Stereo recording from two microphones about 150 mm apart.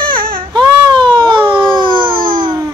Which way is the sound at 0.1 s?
70° right (ahead or behind).